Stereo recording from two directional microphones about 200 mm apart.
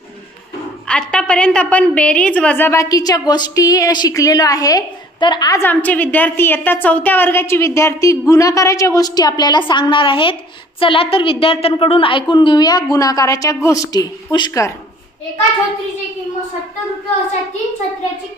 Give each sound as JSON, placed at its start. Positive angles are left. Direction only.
{"t": 0.8, "sound": "a woman's voice", "side_deg": 5}